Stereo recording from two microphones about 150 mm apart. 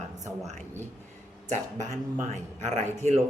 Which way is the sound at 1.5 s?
50° right (ahead or behind).